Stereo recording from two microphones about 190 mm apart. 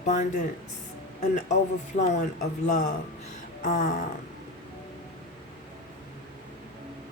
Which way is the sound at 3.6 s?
40° left (ahead or behind).